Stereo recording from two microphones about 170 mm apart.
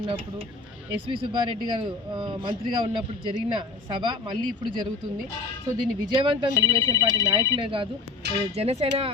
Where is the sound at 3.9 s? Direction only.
30° right (ahead or behind).